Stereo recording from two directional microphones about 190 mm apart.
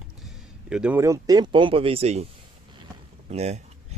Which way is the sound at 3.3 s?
35° right (ahead or behind).